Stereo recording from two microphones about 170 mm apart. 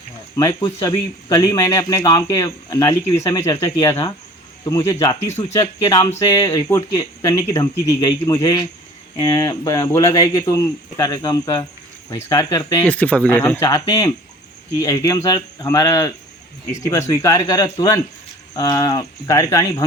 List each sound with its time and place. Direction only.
0.3 s speech: 20° left (ahead or behind)
12.8 s speech: 10° left (ahead or behind)